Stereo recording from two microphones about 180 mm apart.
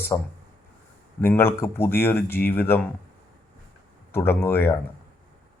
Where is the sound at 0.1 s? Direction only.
20° left (ahead or behind).